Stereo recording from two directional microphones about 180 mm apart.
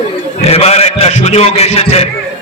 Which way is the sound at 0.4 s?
35° left (ahead or behind).